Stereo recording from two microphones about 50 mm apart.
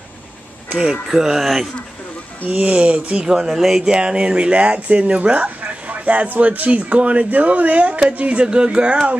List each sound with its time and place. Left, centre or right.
1.0 s speech: centre
2.4 s speech: right
3.3 s speech: centre